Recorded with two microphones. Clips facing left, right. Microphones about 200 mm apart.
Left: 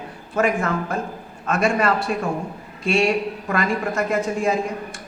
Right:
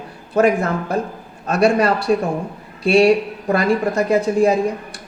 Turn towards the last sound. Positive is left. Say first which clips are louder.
# right 6 dB
turn(degrees=-35)  # may be behind; listen again after turning